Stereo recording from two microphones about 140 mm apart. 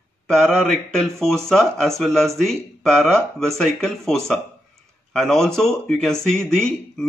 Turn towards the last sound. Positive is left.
turn(degrees=5)  # may be behind; listen again after turning